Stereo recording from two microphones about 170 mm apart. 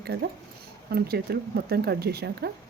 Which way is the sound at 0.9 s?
65° right (ahead or behind).